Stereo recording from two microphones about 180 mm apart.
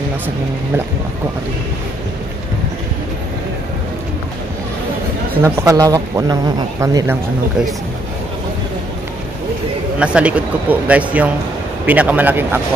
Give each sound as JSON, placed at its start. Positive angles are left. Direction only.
{"t": 5.3, "sound": "speech", "side_deg": -15}
{"t": 9.9, "sound": "a man's voice", "side_deg": -5}